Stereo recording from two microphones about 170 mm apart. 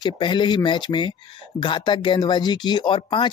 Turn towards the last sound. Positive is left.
turn(degrees=30)  # may be behind; listen again after turning